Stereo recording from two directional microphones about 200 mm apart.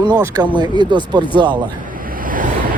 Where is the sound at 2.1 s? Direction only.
45° right (ahead or behind).